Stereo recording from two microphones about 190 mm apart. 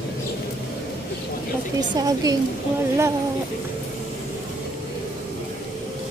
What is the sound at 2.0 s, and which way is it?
Speech, 20° right (ahead or behind).